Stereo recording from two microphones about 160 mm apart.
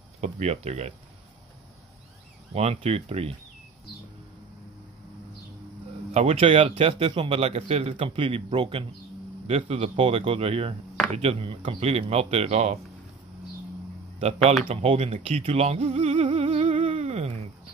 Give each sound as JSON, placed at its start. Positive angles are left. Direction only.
{"t": 0.2, "sound": "speech", "side_deg": -45}
{"t": 2.5, "sound": "a man's voice", "side_deg": -40}
{"t": 6.1, "sound": "a man's voice", "side_deg": -40}
{"t": 14.7, "sound": "speech", "side_deg": -40}
{"t": 16.8, "sound": "a sound", "side_deg": -40}